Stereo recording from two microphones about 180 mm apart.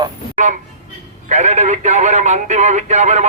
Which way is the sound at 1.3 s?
40° right (ahead or behind).